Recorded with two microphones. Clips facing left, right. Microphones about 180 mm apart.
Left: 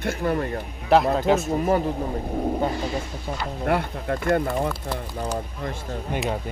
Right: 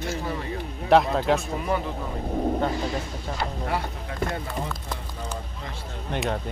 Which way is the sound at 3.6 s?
60° left (ahead or behind).